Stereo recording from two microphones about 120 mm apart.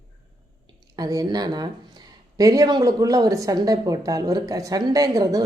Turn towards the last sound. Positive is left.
turn(degrees=-30)  # may be behind; listen again after turning